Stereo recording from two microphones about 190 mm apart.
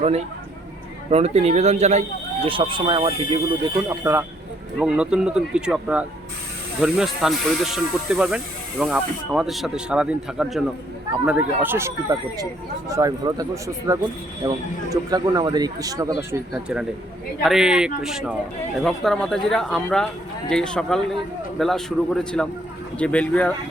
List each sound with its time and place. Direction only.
0.0 s speech: 35° right (ahead or behind)
3.8 s speech: 15° right (ahead or behind)
4.8 s speech: 5° right (ahead or behind)
17.4 s speech: centre (ahead or behind)